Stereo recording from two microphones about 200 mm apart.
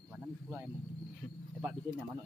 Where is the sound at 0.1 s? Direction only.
5° right (ahead or behind).